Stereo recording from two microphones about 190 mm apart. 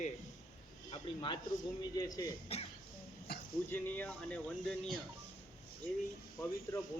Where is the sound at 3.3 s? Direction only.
60° left (ahead or behind).